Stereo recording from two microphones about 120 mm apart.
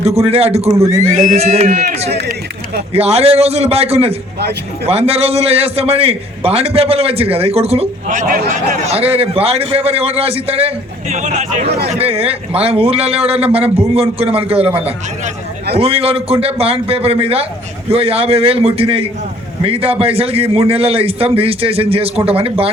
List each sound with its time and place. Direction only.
0.0 s a man's voice: 60° right (ahead or behind)
0.7 s speech: 25° right (ahead or behind)
1.0 s a man's voice: 75° right (ahead or behind); by 10.7 s 55° right (ahead or behind)
11.1 s a man's voice: 80° right; by 14.7 s 55° right (ahead or behind)
15.7 s a man's voice: 55° right (ahead or behind)